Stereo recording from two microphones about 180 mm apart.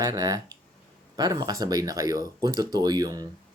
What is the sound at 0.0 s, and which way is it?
Speech, 20° right (ahead or behind).